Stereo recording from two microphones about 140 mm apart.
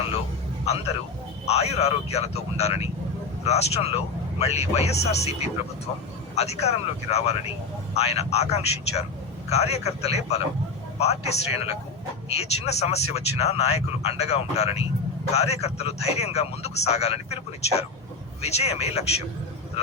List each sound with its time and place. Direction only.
1.5 s speech: 50° left (ahead or behind)